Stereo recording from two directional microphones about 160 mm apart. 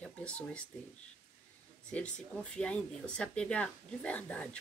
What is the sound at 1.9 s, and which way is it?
Speech, 5° left (ahead or behind).